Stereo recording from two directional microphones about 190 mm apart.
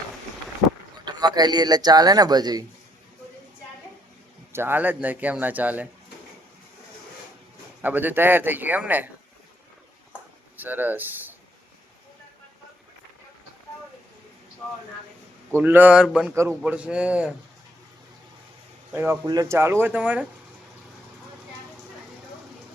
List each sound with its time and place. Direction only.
1.0 s speech: 20° right (ahead or behind)
4.5 s speech: 10° right (ahead or behind)
7.8 s speech: 10° right (ahead or behind)
10.6 s speech: 10° right (ahead or behind)
15.5 s speech: 10° right (ahead or behind)
18.9 s speech: 10° right (ahead or behind)
19.2 s speech: 20° right (ahead or behind)